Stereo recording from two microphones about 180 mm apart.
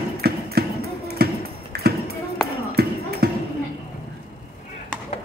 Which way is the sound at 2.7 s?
60° right (ahead or behind).